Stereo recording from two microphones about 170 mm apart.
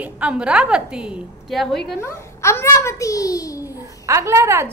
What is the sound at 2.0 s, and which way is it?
A child's voice, 15° left (ahead or behind).